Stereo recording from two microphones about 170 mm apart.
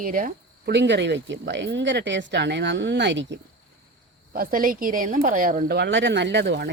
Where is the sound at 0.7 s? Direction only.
90° right.